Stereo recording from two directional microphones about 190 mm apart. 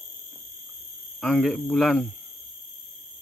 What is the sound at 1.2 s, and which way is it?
Speech, centre (ahead or behind).